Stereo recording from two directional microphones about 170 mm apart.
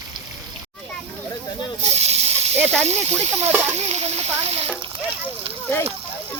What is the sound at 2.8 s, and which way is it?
Speech, 40° right (ahead or behind).